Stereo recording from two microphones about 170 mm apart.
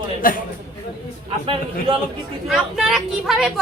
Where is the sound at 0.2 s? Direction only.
55° left (ahead or behind).